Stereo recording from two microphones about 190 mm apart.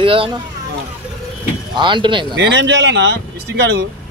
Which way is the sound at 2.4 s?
65° right (ahead or behind).